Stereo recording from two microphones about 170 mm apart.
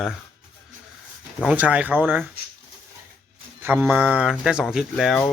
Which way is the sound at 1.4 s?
5° right (ahead or behind).